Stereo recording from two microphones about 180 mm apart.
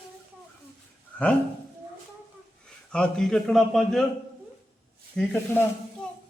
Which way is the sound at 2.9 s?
5° left (ahead or behind).